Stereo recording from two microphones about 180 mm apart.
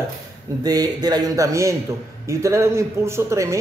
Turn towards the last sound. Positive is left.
turn(degrees=-15)  # may be behind; listen again after turning